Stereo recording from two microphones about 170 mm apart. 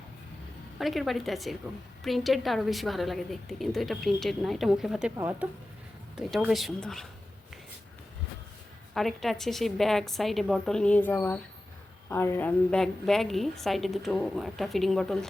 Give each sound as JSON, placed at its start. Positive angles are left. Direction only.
{"t": 0.8, "sound": "a woman's voice", "side_deg": 0}
{"t": 5.1, "sound": "speech", "side_deg": -15}
{"t": 6.1, "sound": "a woman's voice", "side_deg": 0}
{"t": 9.0, "sound": "a woman's voice", "side_deg": 0}